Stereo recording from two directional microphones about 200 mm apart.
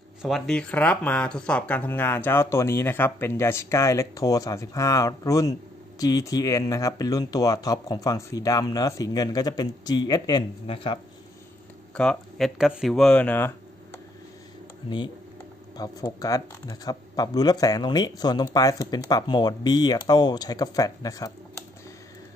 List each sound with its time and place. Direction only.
0.2 s speech: centre (ahead or behind); by 11.0 s 25° left (ahead or behind)
11.9 s speech: 5° left (ahead or behind)
15.8 s speech: 15° left (ahead or behind)